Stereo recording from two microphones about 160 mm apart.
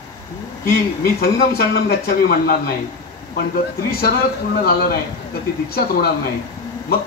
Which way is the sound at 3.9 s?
75° left (ahead or behind).